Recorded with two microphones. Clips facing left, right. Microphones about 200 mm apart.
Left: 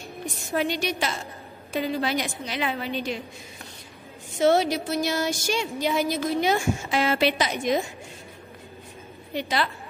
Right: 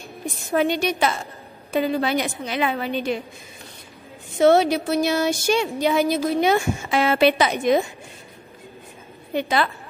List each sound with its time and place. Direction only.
0.6 s a woman's voice: 55° right (ahead or behind)
4.4 s a woman's voice: 60° right (ahead or behind)
9.3 s a woman's voice: 55° right (ahead or behind)